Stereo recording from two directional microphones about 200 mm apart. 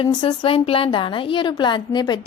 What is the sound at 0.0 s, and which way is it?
A woman's voice, 25° left (ahead or behind).